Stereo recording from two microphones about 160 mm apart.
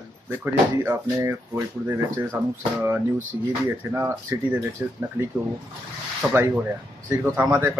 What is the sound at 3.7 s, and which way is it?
Speech, 15° right (ahead or behind).